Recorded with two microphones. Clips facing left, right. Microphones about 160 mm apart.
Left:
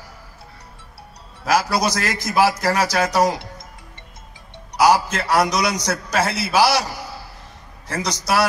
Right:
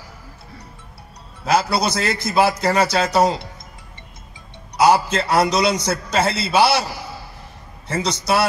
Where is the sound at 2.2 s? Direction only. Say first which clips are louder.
Even; 25° right (ahead or behind).